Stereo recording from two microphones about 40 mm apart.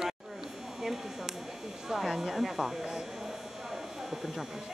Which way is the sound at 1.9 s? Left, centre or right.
Centre.